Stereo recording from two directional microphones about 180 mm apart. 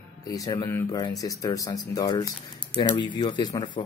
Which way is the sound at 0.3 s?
20° left (ahead or behind).